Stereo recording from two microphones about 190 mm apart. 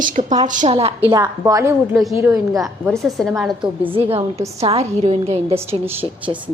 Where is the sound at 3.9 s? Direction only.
30° right (ahead or behind).